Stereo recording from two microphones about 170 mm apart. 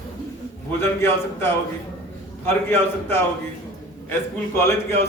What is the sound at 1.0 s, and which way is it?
Speech, 15° left (ahead or behind).